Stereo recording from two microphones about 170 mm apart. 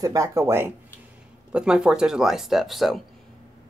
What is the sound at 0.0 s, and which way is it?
Speech, 20° right (ahead or behind).